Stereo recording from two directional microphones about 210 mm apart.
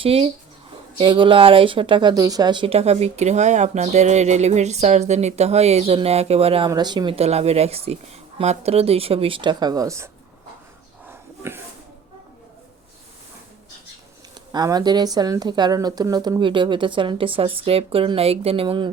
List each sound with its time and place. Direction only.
0.0 s speech: 25° right (ahead or behind)
11.1 s a sound: 10° right (ahead or behind)
14.5 s speech: 20° right (ahead or behind)